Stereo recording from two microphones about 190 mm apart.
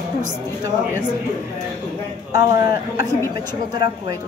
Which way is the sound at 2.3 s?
20° right (ahead or behind).